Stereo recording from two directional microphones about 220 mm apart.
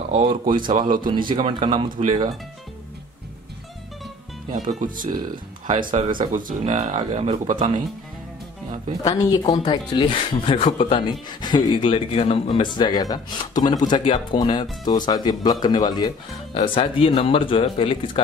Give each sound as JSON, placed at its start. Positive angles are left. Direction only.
{"t": 0.1, "sound": "speech", "side_deg": -25}
{"t": 0.6, "sound": "speech", "side_deg": -40}
{"t": 1.0, "sound": "speech", "side_deg": -20}
{"t": 4.5, "sound": "speech", "side_deg": -35}
{"t": 9.0, "sound": "speech", "side_deg": 15}